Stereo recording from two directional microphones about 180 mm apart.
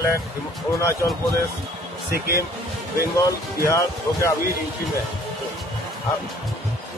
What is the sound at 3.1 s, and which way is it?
Speech, 15° left (ahead or behind).